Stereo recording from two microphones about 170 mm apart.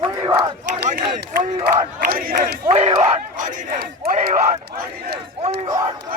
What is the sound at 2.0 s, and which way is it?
Speech, 55° right (ahead or behind).